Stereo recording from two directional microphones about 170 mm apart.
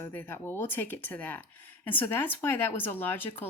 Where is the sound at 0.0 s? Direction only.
10° left (ahead or behind).